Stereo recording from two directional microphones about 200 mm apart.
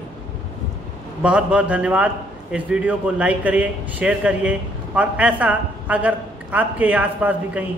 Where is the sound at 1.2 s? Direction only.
5° right (ahead or behind).